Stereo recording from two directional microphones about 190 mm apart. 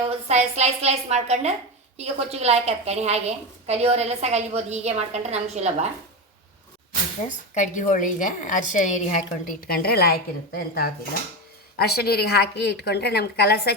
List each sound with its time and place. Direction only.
0.0 s a woman's voice: 35° right (ahead or behind)
7.3 s a woman's voice: 40° left (ahead or behind); by 13.7 s 60° left (ahead or behind)